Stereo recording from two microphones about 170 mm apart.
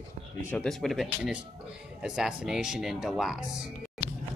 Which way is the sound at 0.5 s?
5° left (ahead or behind).